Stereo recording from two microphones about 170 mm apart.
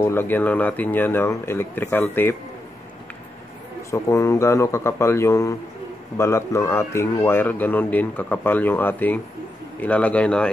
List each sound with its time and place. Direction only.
0.0 s speech: 15° left (ahead or behind)
3.9 s speech: 20° left (ahead or behind)